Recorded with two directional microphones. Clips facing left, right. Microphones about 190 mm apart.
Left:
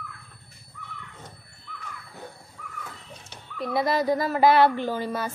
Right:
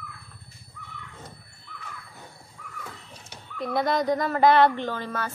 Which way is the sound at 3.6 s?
Centre (ahead or behind).